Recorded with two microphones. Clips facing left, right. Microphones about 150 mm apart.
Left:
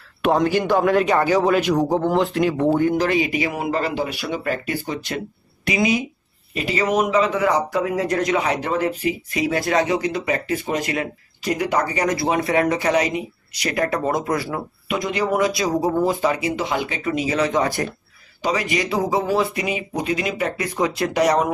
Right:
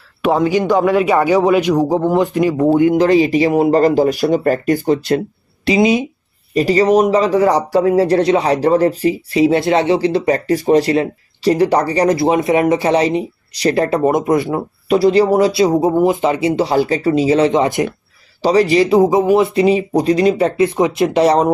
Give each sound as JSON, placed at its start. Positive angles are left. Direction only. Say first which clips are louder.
{"t": 0.2, "sound": "a man's voice", "louder": "right 4 dB", "side_deg": -10}
{"t": 2.7, "sound": "speech", "louder": "right 7 dB", "side_deg": -20}
{"t": 3.1, "sound": "speech", "louder": "right 9 dB", "side_deg": -35}
{"t": 5.7, "sound": "speech", "louder": "right 7 dB", "side_deg": -25}
{"t": 6.5, "sound": "speech", "louder": "right 9 dB", "side_deg": -40}
{"t": 14.9, "sound": "speech", "louder": "right 11 dB", "side_deg": -35}
{"t": 18.4, "sound": "speech", "louder": "right 10 dB", "side_deg": -35}